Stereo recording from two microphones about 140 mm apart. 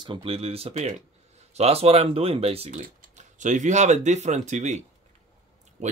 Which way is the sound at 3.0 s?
60° right (ahead or behind).